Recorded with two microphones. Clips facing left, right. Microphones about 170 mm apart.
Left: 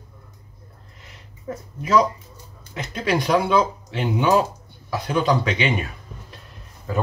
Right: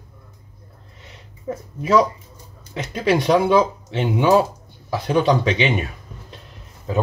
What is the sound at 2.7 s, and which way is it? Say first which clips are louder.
Speech: right 4 dB; 25° right (ahead or behind).